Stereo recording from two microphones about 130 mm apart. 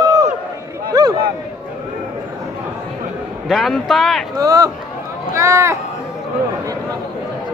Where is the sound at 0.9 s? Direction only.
30° right (ahead or behind).